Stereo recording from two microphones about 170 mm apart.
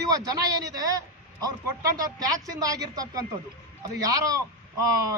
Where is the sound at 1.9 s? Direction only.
20° right (ahead or behind).